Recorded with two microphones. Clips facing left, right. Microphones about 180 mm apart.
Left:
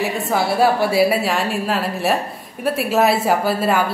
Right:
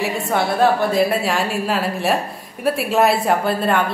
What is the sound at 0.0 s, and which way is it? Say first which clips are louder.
A woman's voice: even; 5° left (ahead or behind).